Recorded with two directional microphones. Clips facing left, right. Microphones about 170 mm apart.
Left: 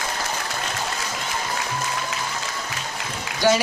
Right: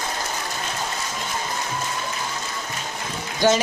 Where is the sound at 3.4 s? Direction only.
20° right (ahead or behind).